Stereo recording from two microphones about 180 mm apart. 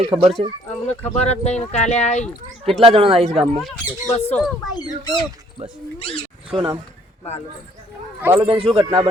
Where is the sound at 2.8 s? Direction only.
30° right (ahead or behind).